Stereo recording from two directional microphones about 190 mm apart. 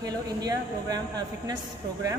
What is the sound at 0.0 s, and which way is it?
A man's voice, 20° right (ahead or behind).